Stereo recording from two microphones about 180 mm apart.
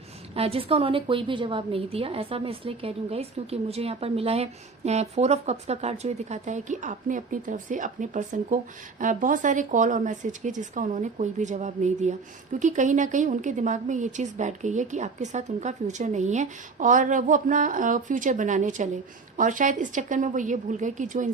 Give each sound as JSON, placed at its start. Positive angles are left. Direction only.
{"t": 0.3, "sound": "a woman's voice", "side_deg": -30}